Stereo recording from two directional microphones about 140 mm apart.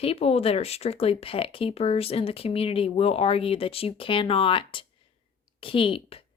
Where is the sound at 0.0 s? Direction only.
45° left (ahead or behind).